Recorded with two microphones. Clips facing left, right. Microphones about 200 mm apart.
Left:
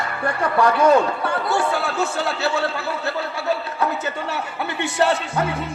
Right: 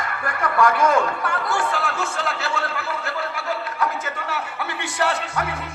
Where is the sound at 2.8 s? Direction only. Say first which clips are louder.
Left 3 dB; 25° left (ahead or behind).